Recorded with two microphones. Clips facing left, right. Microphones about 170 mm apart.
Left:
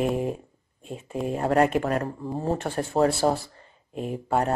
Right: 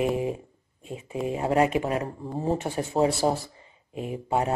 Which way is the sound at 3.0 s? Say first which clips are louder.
Left 1 dB; 20° right (ahead or behind).